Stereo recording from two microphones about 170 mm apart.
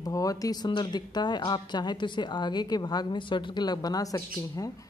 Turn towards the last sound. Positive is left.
turn(degrees=20)  # may be behind; listen again after turning